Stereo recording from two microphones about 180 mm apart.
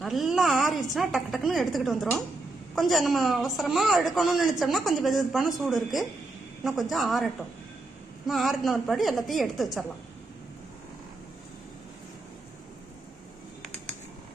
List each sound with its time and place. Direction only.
0.0 s a man's voice: centre (ahead or behind)
8.3 s a man's voice: centre (ahead or behind)